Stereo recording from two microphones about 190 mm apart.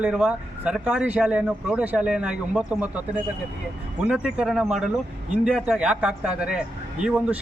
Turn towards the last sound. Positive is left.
turn(degrees=-10)  # may be behind; listen again after turning